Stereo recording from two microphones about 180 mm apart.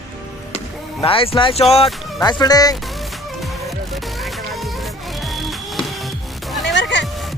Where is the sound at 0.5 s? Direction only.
30° left (ahead or behind).